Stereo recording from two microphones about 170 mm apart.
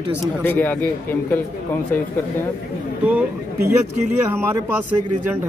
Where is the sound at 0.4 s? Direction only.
10° left (ahead or behind).